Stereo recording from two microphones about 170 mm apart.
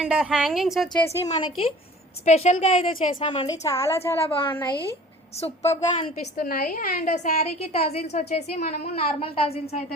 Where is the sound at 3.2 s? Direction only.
25° left (ahead or behind).